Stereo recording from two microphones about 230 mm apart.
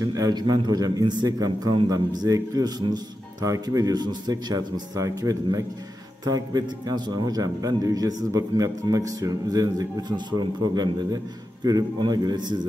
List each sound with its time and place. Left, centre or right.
0.1 s a man's voice: centre